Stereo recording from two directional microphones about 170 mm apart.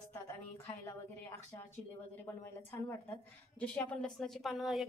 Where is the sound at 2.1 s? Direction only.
10° left (ahead or behind).